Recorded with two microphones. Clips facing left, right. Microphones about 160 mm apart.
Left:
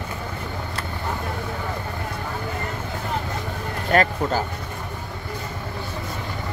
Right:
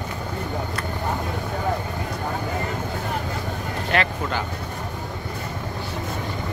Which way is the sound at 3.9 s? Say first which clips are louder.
Left 5 dB; 40° left (ahead or behind).